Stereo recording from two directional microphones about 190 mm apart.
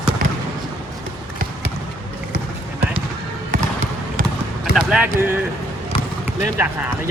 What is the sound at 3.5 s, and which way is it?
Trickle, 45° right (ahead or behind).